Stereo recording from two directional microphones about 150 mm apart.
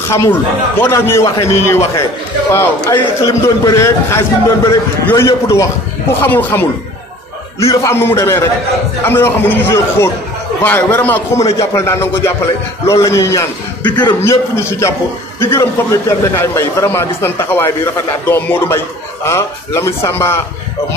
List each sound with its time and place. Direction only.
0.1 s a man's voice: 15° left (ahead or behind)
7.7 s a man's voice: 20° left (ahead or behind)
14.2 s a man's voice: 15° left (ahead or behind)